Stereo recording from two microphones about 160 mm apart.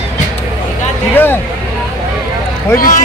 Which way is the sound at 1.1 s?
10° left (ahead or behind).